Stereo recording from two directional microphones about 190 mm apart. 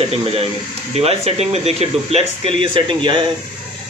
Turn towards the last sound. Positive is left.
turn(degrees=-25)  # may be behind; listen again after turning